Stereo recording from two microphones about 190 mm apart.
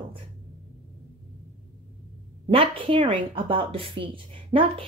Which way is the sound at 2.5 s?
25° right (ahead or behind).